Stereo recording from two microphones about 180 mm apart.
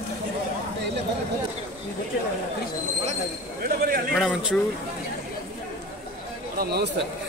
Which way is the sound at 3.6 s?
55° right (ahead or behind).